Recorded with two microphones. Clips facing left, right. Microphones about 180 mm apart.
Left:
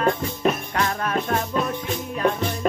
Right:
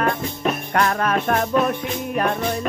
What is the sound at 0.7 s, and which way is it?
Music, 80° right.